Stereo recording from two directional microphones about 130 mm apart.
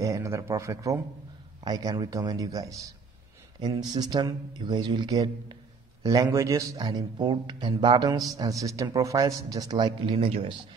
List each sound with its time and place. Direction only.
0.0 s speech: 20° right (ahead or behind); by 10.5 s 45° right (ahead or behind)